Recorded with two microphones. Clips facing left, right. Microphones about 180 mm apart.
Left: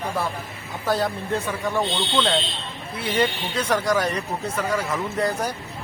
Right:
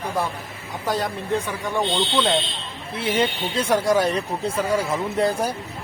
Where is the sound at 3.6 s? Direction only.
25° right (ahead or behind).